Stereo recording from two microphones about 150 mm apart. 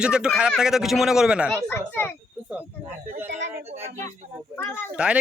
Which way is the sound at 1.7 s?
15° left (ahead or behind).